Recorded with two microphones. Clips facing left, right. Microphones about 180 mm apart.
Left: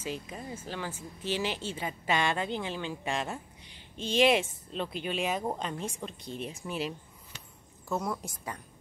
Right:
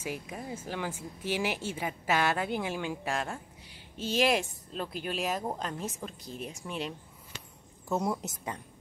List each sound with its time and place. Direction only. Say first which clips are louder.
0.0 s speech: even; 10° right (ahead or behind)
7.9 s a woman's voice: right 2 dB; 20° right (ahead or behind)